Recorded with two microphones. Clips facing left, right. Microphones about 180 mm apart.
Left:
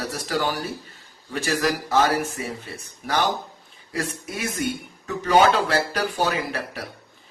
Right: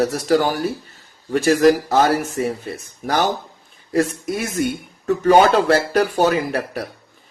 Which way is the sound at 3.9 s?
45° right (ahead or behind).